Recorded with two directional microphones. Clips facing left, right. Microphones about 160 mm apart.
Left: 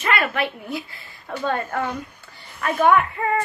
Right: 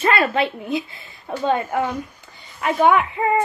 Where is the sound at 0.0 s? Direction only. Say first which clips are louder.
Right 4 dB; 30° right (ahead or behind).